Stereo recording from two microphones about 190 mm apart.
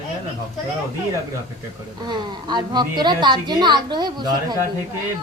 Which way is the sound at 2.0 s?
20° right (ahead or behind).